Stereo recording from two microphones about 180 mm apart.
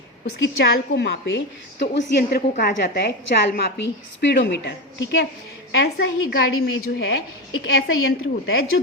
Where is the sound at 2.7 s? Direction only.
65° left (ahead or behind); by 6.8 s 85° left.